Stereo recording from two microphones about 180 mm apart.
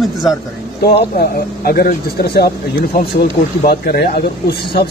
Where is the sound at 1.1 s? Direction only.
55° left (ahead or behind).